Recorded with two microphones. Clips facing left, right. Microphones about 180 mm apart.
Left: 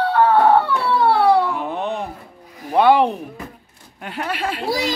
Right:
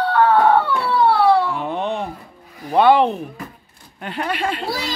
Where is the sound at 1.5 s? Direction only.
5° left (ahead or behind).